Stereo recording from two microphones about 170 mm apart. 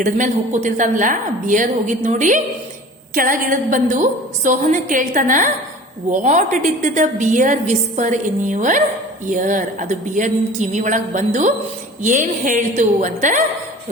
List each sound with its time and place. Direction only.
0.0 s a woman's voice: 45° right (ahead or behind)